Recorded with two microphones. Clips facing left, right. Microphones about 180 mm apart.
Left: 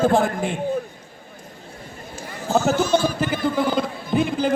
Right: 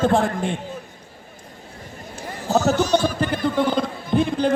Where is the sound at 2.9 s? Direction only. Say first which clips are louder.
Even; 5° left (ahead or behind).